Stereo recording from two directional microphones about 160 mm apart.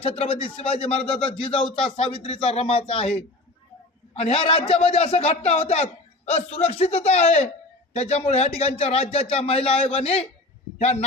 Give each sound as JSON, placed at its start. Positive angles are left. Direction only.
{"t": 0.0, "sound": "a man's voice", "side_deg": 35}